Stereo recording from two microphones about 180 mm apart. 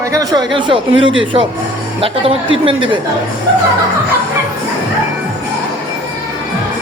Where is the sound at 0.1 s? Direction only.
20° right (ahead or behind).